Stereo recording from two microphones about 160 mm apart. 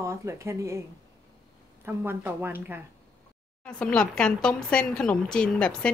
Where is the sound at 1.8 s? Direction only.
15° right (ahead or behind).